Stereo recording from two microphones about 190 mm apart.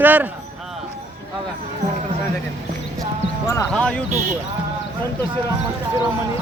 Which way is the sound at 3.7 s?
5° left (ahead or behind).